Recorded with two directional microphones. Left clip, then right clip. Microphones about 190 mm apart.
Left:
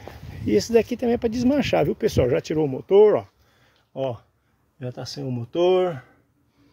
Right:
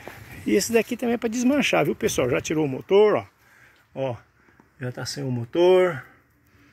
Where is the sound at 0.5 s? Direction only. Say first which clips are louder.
Left 2 dB; 25° left (ahead or behind).